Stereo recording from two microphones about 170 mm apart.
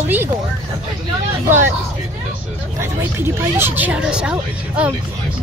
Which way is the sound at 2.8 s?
15° right (ahead or behind).